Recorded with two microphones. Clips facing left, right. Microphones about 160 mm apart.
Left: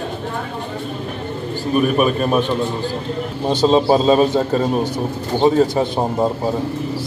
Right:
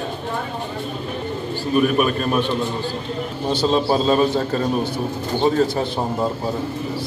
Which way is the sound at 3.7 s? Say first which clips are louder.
Left 5 dB; 25° left (ahead or behind).